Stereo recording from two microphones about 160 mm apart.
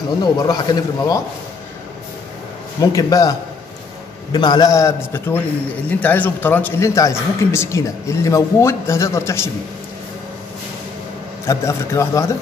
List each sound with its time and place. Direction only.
0.2 s a man's voice: 25° left (ahead or behind)
2.8 s a man's voice: 20° left (ahead or behind)
11.4 s a man's voice: 20° left (ahead or behind)